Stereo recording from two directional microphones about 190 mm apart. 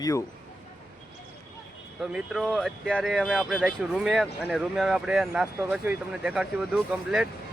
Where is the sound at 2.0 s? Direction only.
Centre (ahead or behind).